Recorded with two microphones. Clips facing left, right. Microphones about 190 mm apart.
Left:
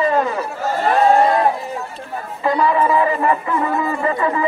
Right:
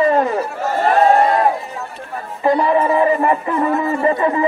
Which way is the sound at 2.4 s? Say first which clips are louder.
Right 2 dB; 30° right (ahead or behind).